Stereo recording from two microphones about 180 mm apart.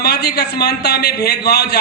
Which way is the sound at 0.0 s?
65° left (ahead or behind).